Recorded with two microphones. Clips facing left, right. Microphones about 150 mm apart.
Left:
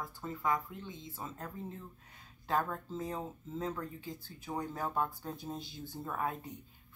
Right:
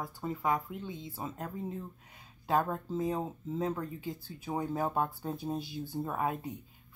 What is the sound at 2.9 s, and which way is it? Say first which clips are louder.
Speech: right 6 dB; 15° right (ahead or behind).